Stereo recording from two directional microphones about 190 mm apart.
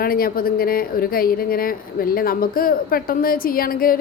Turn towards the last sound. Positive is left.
turn(degrees=50)  # may be behind; listen again after turning